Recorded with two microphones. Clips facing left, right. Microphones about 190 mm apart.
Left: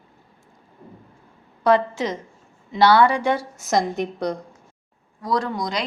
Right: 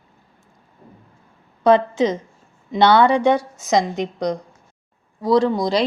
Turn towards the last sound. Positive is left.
turn(degrees=-30)  # may be behind; listen again after turning